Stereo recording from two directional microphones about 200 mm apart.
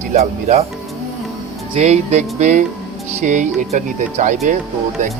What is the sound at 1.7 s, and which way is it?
Speech, 35° right (ahead or behind).